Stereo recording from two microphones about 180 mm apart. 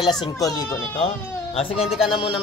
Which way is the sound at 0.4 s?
20° left (ahead or behind).